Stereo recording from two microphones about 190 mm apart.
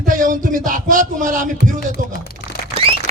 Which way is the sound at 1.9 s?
55° left (ahead or behind).